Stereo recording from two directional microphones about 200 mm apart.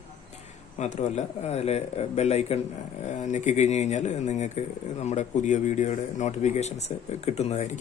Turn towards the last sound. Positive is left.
turn(degrees=35)  # may be behind; listen again after turning